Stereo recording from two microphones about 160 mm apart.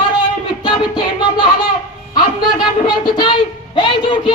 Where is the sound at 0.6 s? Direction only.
30° left (ahead or behind).